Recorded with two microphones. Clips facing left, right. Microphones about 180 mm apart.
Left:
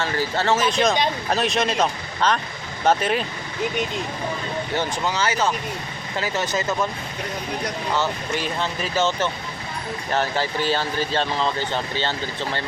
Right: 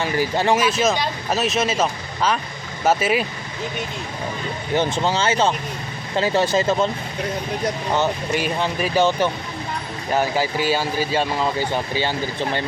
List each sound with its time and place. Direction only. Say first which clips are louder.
0.0 s speech: right 3 dB; 15° right (ahead or behind)
4.7 s speech: right 6 dB; 20° right (ahead or behind)
7.9 s speech: right 3 dB; 15° right (ahead or behind)